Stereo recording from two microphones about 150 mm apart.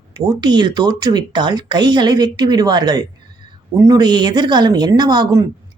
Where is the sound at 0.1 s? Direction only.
30° right (ahead or behind).